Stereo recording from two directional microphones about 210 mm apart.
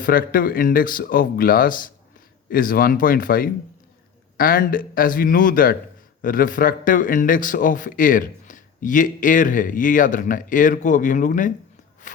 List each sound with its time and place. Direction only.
0.0 s speech: 40° left (ahead or behind)
12.0 s walk: 35° left (ahead or behind)